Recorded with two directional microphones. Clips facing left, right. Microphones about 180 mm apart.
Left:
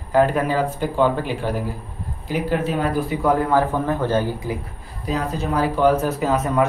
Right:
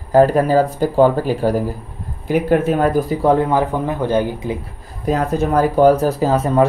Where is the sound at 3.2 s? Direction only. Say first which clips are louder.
Right 2 dB; 20° right (ahead or behind).